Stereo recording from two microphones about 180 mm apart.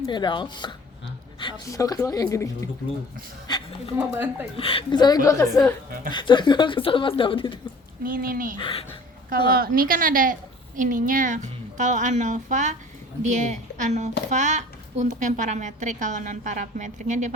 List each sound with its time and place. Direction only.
0.0 s speech: 25° left (ahead or behind)
3.9 s speech: 10° right (ahead or behind)
4.5 s speech: 30° left (ahead or behind)
8.0 s a woman's voice: 55° right (ahead or behind)
8.5 s speech: 25° left (ahead or behind)
9.5 s a woman's voice: 55° right (ahead or behind)